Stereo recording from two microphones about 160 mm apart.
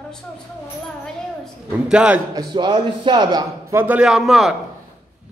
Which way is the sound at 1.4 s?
5° right (ahead or behind).